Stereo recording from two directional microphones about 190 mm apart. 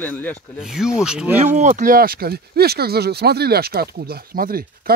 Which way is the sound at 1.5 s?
40° right (ahead or behind).